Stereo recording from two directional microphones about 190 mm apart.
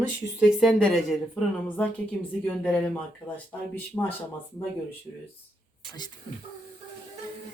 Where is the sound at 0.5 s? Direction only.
Centre (ahead or behind).